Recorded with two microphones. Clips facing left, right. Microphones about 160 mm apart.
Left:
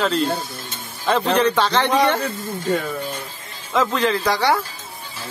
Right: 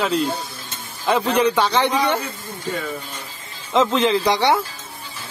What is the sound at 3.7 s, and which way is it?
Speech, 25° right (ahead or behind).